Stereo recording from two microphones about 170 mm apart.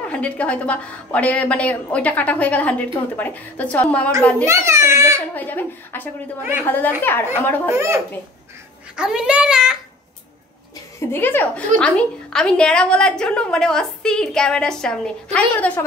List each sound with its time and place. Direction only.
0.1 s a woman's voice: 5° left (ahead or behind)
4.5 s a child's voice: 15° right (ahead or behind)
5.3 s a woman's voice: 10° left (ahead or behind)
7.7 s a child's voice: 15° right (ahead or behind)
8.9 s a woman's voice: 5° right (ahead or behind)
11.0 s a woman's voice: 15° left (ahead or behind)